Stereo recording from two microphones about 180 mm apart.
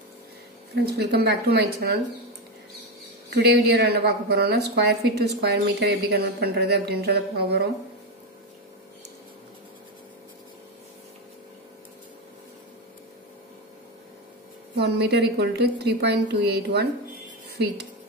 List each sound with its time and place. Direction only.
0.8 s a woman's voice: 60° right (ahead or behind)
3.3 s a woman's voice: 60° right (ahead or behind)
14.8 s a woman's voice: 65° right (ahead or behind)